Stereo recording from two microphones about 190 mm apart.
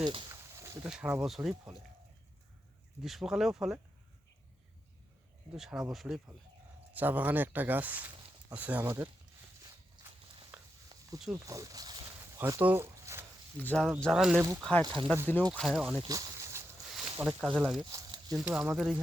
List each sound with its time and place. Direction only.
0.0 s speech: 25° right (ahead or behind)
0.4 s a sound: 15° right (ahead or behind)
0.9 s speech: 5° right (ahead or behind)
3.0 s speech: centre (ahead or behind)
5.5 s speech: centre (ahead or behind)
10.5 s a sound: 5° right (ahead or behind)
11.3 s speech: 15° right (ahead or behind)
12.4 s a sound: 15° right (ahead or behind)
13.6 s speech: 5° left (ahead or behind)
16.0 s a sound: 20° right (ahead or behind)
17.2 s speech: 5° right (ahead or behind)
17.7 s speech: 20° right (ahead or behind)
18.4 s speech: 10° right (ahead or behind)